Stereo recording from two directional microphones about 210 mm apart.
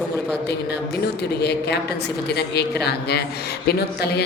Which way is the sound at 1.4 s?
50° left (ahead or behind).